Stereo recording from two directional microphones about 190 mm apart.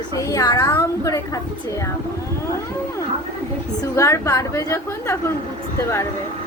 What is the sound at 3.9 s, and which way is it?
A woman's voice, 15° left (ahead or behind).